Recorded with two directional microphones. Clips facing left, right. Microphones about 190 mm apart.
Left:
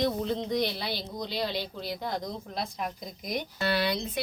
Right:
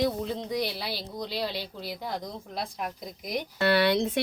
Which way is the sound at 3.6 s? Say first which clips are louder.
Right 6 dB; 65° right (ahead or behind).